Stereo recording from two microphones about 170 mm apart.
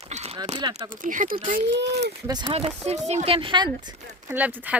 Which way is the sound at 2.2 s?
25° right (ahead or behind).